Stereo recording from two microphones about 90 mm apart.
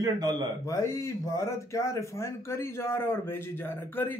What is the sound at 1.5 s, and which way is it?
A man's voice, 35° left (ahead or behind).